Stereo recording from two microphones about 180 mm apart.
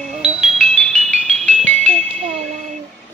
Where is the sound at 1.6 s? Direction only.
40° right (ahead or behind).